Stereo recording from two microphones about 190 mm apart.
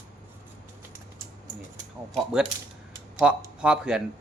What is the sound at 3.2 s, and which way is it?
Speech, 5° right (ahead or behind).